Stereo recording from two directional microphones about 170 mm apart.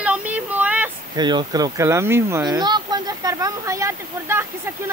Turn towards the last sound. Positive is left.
turn(degrees=-15)  # may be behind; listen again after turning